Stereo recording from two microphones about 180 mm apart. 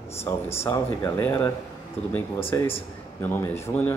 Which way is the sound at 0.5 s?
15° left (ahead or behind).